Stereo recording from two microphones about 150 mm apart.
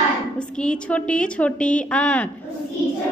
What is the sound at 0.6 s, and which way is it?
A woman's voice, 5° left (ahead or behind).